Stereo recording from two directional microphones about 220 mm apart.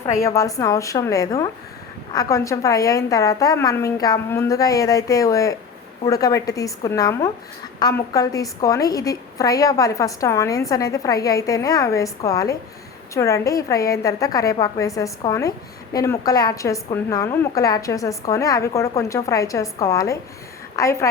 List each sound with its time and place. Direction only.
0.0 s a woman's voice: 15° left (ahead or behind)